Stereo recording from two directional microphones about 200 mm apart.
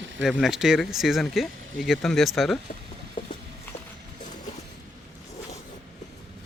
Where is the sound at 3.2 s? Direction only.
25° left (ahead or behind).